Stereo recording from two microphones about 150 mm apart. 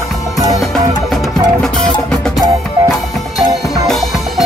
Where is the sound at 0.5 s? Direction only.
Centre (ahead or behind).